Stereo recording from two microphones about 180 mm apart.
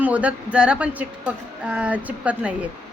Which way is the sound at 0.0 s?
5° right (ahead or behind).